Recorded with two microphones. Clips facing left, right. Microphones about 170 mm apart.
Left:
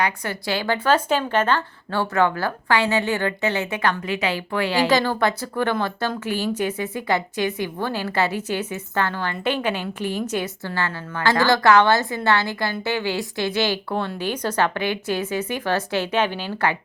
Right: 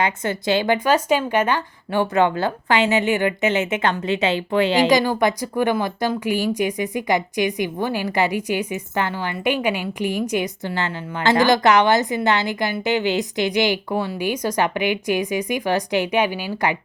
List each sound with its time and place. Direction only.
0.0 s a woman's voice: 20° right (ahead or behind)